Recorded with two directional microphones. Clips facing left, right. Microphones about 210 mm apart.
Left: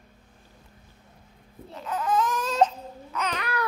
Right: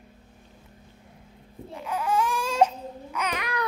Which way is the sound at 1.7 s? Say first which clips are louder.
Even; 10° right (ahead or behind).